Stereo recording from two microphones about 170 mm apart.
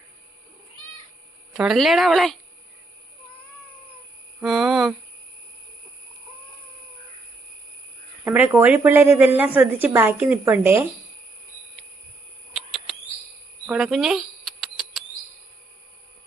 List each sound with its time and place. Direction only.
1.5 s speech: centre (ahead or behind)
4.4 s speech: centre (ahead or behind)
8.2 s a woman's voice: 10° right (ahead or behind)
12.5 s a sound: centre (ahead or behind)